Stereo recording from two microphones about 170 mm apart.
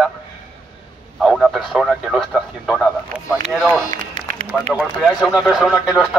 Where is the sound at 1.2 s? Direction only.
Centre (ahead or behind).